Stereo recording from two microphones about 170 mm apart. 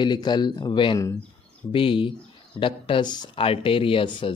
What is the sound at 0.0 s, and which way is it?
Speech, 25° left (ahead or behind).